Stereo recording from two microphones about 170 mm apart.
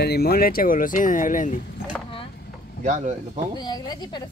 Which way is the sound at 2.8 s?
45° right (ahead or behind).